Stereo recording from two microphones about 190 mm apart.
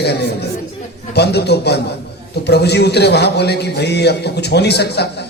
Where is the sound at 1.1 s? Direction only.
60° left (ahead or behind).